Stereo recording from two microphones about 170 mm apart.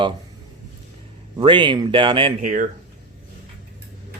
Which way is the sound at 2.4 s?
50° right (ahead or behind).